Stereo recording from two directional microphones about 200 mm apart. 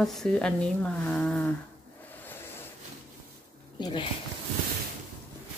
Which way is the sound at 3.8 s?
25° left (ahead or behind).